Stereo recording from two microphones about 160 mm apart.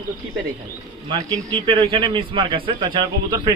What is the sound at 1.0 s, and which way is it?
A man's voice, 30° right (ahead or behind).